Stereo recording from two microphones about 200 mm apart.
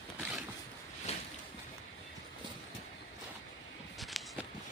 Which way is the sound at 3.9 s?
Centre (ahead or behind).